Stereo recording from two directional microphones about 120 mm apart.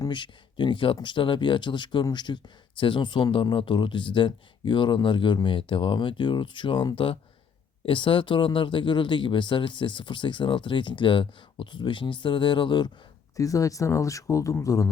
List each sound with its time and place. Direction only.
0.0 s speech: 40° left (ahead or behind)
13.3 s speech: 30° left (ahead or behind)